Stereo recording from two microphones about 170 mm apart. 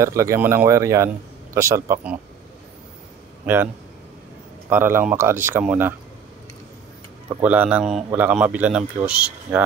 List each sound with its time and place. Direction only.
0.0 s a man's voice: 15° right (ahead or behind)
3.5 s a man's voice: 10° right (ahead or behind)
4.6 s a man's voice: 10° right (ahead or behind)
7.4 s a man's voice: 10° right (ahead or behind)